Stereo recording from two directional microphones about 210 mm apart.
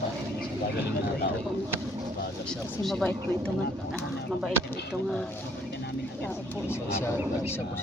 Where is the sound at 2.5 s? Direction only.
5° left (ahead or behind).